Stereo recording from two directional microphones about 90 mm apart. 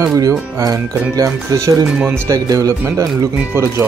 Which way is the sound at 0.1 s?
40° right (ahead or behind).